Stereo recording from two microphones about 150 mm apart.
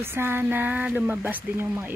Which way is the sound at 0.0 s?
15° right (ahead or behind).